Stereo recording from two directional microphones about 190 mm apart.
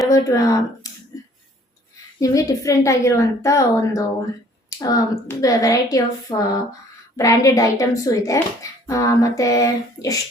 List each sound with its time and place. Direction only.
0.1 s speech: 15° left (ahead or behind)
2.2 s speech: 15° left (ahead or behind)